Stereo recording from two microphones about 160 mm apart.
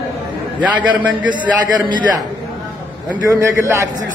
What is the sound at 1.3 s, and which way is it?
Speech, 30° right (ahead or behind).